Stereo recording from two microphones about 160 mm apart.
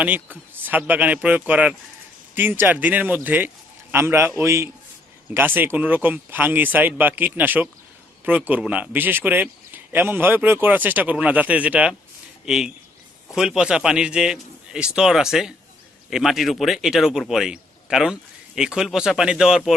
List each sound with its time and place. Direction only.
0.0 s a man's voice: 10° right (ahead or behind)